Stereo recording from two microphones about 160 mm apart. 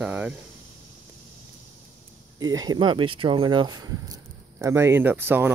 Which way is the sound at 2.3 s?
25° right (ahead or behind).